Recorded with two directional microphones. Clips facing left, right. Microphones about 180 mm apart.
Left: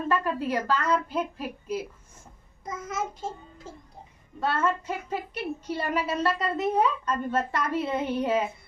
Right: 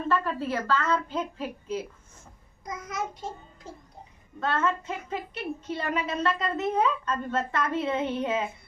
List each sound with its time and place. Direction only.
0.1 s a woman's voice: 15° left (ahead or behind)
4.4 s a woman's voice: 10° left (ahead or behind)